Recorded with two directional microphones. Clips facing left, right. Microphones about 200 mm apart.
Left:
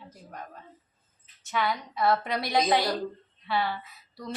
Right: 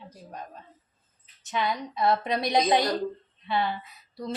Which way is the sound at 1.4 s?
20° right (ahead or behind).